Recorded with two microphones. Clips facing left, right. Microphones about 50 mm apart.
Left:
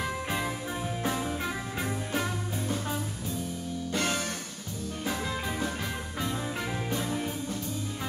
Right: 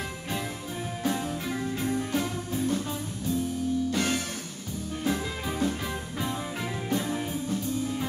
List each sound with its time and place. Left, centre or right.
1.0 s music: centre
6.9 s music: centre